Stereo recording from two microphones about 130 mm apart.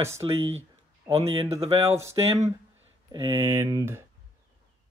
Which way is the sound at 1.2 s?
50° right (ahead or behind).